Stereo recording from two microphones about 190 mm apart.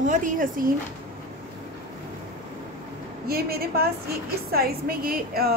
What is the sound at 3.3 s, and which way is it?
A woman's voice, 55° right (ahead or behind).